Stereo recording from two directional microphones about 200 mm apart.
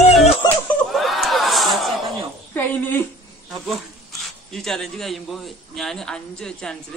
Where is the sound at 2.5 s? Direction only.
10° left (ahead or behind).